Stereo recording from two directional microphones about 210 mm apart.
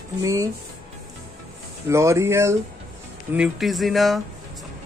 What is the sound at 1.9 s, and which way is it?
Speech, 15° right (ahead or behind).